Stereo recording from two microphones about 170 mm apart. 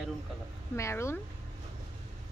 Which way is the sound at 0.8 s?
15° left (ahead or behind).